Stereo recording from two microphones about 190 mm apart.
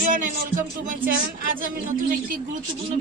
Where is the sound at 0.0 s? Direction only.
45° right (ahead or behind).